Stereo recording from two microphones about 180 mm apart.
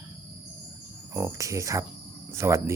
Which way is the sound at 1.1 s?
15° right (ahead or behind).